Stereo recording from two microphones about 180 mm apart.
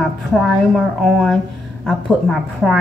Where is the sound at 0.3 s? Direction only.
Centre (ahead or behind).